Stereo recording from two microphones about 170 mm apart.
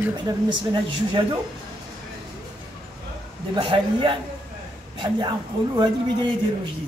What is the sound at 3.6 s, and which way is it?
A woman's voice, 30° right (ahead or behind).